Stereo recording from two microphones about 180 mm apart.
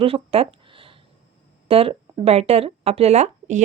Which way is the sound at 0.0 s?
30° right (ahead or behind).